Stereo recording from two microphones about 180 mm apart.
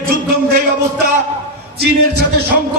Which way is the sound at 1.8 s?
65° right (ahead or behind).